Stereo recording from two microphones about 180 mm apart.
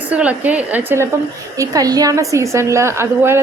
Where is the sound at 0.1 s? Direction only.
10° right (ahead or behind).